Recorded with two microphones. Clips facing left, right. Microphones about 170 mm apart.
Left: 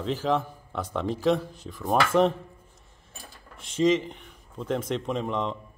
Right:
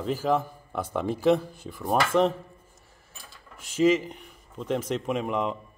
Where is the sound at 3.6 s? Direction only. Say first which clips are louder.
Right 1 dB; 5° right (ahead or behind).